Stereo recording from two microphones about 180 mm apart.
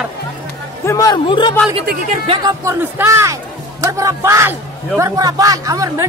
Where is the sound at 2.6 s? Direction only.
15° right (ahead or behind).